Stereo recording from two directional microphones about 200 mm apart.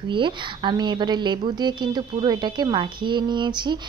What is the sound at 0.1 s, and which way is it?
A woman's voice, 25° right (ahead or behind).